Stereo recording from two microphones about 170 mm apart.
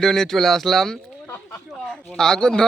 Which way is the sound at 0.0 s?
Centre (ahead or behind).